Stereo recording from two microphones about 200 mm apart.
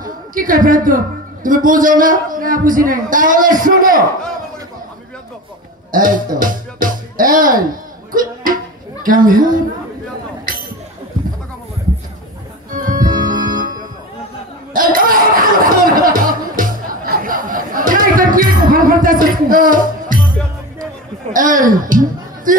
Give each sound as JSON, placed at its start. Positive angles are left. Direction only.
{"t": 0.0, "sound": "a woman's voice", "side_deg": -45}
{"t": 5.9, "sound": "speech", "side_deg": -45}
{"t": 8.1, "sound": "music", "side_deg": -45}
{"t": 9.0, "sound": "a woman's voice", "side_deg": -45}
{"t": 12.7, "sound": "music", "side_deg": -45}
{"t": 14.7, "sound": "a sound", "side_deg": -45}
{"t": 21.3, "sound": "a woman's voice", "side_deg": -40}